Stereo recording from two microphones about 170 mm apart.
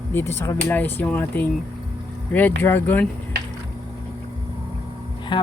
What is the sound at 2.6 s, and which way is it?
Speech, 10° left (ahead or behind).